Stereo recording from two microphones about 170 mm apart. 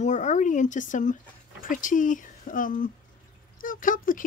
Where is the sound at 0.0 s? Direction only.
45° left (ahead or behind).